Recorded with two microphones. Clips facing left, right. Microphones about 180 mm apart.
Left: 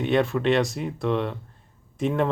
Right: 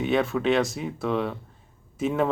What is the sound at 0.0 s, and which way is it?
Speech, centre (ahead or behind).